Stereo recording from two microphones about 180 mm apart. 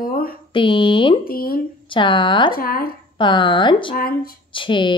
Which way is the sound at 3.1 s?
25° left (ahead or behind).